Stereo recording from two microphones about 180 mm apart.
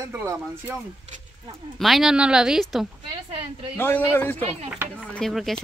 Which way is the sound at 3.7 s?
10° left (ahead or behind).